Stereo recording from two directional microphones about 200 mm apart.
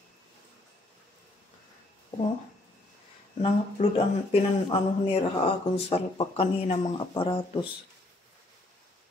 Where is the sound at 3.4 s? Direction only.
30° left (ahead or behind).